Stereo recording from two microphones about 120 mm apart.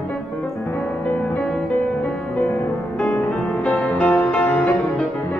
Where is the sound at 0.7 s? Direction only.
10° left (ahead or behind).